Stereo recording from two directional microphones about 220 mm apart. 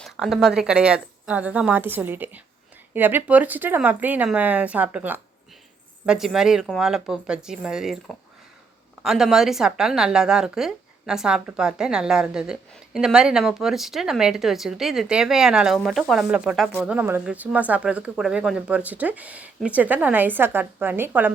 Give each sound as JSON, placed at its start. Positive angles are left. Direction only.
{"t": 0.0, "sound": "a woman's voice", "side_deg": 0}
{"t": 9.0, "sound": "a woman's voice", "side_deg": 0}